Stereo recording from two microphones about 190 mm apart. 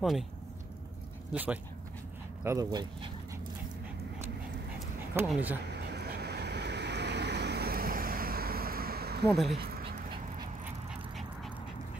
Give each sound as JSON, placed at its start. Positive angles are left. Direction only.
{"t": 0.0, "sound": "speech", "side_deg": 0}
{"t": 1.3, "sound": "speech", "side_deg": -10}
{"t": 5.1, "sound": "speech", "side_deg": -10}
{"t": 5.7, "sound": "vehicle", "side_deg": -60}